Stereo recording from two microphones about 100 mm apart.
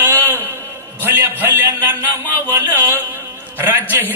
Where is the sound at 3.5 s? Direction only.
20° right (ahead or behind).